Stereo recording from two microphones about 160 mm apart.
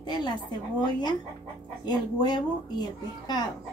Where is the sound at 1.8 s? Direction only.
25° left (ahead or behind).